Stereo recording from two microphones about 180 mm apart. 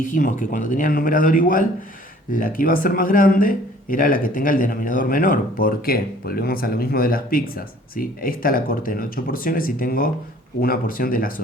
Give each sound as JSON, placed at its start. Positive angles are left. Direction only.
{"t": 0.1, "sound": "speech", "side_deg": 45}